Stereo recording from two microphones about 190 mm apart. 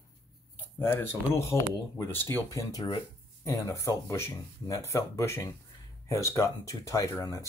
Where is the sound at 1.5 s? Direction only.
10° left (ahead or behind).